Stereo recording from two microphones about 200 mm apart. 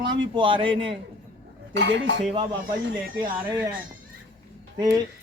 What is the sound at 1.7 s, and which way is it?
Speech, 65° right (ahead or behind).